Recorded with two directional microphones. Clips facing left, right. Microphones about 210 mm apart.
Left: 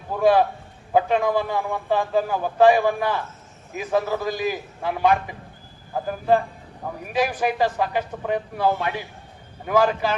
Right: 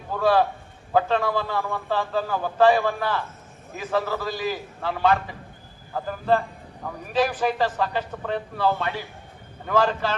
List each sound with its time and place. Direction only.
0.2 s a man's voice: 15° left (ahead or behind)